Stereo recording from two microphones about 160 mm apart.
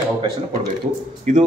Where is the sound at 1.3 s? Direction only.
50° right (ahead or behind).